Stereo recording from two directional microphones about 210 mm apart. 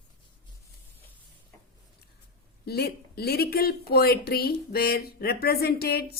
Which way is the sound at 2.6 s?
50° left (ahead or behind).